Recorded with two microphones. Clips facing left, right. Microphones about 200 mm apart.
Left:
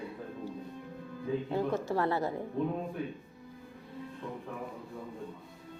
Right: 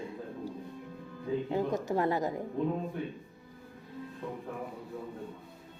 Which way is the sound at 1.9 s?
15° right (ahead or behind).